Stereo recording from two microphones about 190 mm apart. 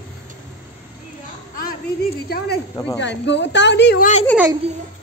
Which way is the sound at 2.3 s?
55° left (ahead or behind).